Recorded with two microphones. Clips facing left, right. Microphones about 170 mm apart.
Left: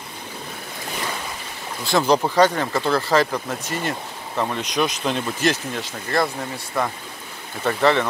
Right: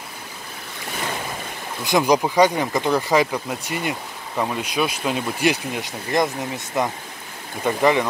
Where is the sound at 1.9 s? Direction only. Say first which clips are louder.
Right 1 dB; 15° right (ahead or behind).